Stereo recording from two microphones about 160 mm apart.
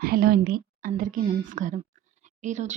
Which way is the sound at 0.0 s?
70° right (ahead or behind).